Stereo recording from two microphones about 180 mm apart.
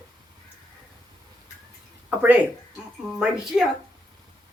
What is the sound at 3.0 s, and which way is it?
Speech, 5° right (ahead or behind).